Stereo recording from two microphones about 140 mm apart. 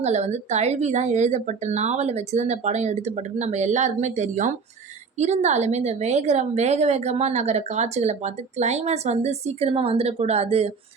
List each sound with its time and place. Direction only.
0.0 s a woman's voice: 55° right (ahead or behind)